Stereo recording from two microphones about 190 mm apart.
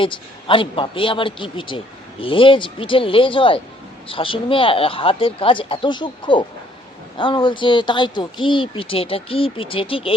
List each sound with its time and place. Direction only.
0.0 s speech: 25° left (ahead or behind)